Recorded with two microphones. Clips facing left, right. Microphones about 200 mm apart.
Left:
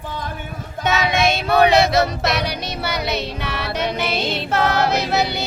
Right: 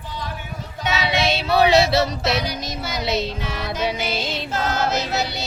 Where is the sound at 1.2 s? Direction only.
55° left (ahead or behind).